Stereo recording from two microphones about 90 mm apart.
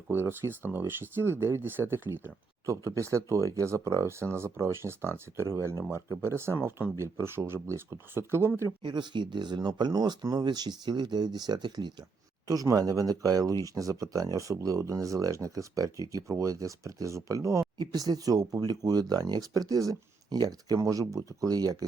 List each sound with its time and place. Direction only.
0.1 s speech: 25° right (ahead or behind)
2.6 s speech: 35° right (ahead or behind)
8.8 s speech: 60° right (ahead or behind)
12.5 s speech: 40° right (ahead or behind)